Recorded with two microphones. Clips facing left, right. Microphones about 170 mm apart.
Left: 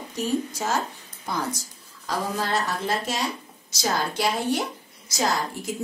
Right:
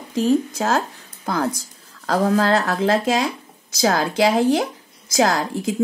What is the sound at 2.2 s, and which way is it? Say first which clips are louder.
Speech: right 9 dB; 90° right.